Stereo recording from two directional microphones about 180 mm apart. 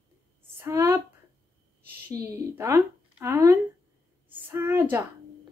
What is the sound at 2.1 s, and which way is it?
Speech, 15° right (ahead or behind).